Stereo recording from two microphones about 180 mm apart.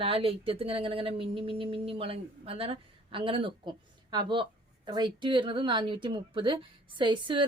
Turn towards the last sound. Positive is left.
turn(degrees=-25)  # may be behind; listen again after turning